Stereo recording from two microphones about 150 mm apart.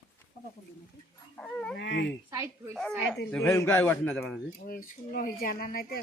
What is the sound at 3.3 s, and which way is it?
A man's voice, 15° left (ahead or behind).